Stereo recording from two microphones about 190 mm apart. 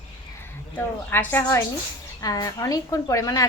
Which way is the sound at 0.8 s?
10° left (ahead or behind).